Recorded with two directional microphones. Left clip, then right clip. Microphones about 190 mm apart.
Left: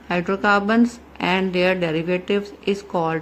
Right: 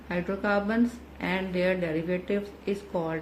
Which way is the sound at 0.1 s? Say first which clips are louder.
Left 9 dB; 50° left (ahead or behind).